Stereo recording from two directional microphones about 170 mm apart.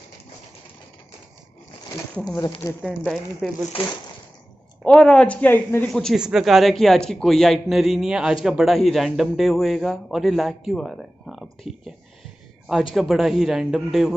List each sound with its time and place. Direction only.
2.2 s speech: 25° left (ahead or behind)
2.8 s a man's voice: centre (ahead or behind)
4.8 s a man's voice: 5° left (ahead or behind)
12.9 s a man's voice: centre (ahead or behind)